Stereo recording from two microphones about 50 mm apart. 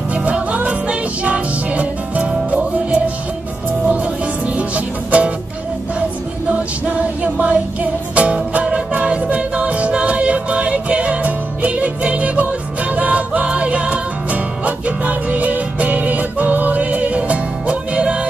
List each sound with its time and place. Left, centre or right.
0.1 s music: right
6.5 s music: right